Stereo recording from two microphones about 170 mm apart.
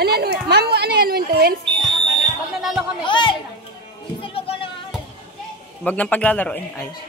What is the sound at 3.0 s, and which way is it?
Speech, 30° left (ahead or behind).